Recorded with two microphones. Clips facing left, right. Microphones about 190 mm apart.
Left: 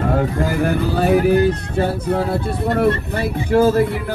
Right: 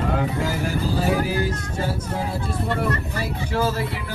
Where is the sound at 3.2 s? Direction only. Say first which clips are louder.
Left 9 dB; 50° left (ahead or behind).